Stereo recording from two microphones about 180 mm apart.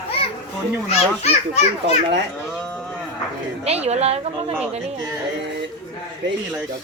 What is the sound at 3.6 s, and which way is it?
Speech, 35° right (ahead or behind).